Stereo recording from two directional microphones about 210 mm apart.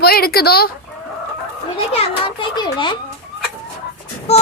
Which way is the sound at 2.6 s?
20° left (ahead or behind).